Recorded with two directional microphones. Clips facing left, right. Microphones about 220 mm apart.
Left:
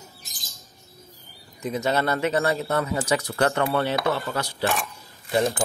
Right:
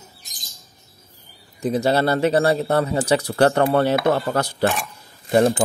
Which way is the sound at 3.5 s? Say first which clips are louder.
Right 6 dB; 45° right (ahead or behind).